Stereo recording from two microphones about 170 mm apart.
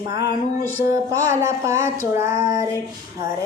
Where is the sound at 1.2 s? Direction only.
15° right (ahead or behind).